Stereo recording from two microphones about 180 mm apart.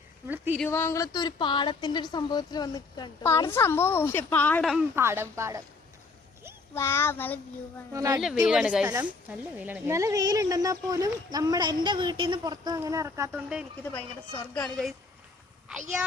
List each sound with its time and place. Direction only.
0.3 s speech: 10° right (ahead or behind)
0.6 s a woman's voice: 15° left (ahead or behind)
4.9 s speech: 15° right (ahead or behind)
6.7 s a woman's voice: 15° left (ahead or behind)
7.9 s speech: 20° right (ahead or behind)
8.4 s speech: 5° right (ahead or behind)
13.3 s speech: 5° right (ahead or behind)
13.8 s a woman's voice: 10° left (ahead or behind)